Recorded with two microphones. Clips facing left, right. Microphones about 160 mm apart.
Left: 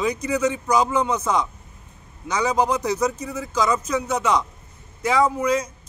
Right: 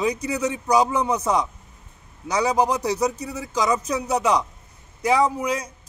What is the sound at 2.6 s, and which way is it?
Speech, 35° right (ahead or behind).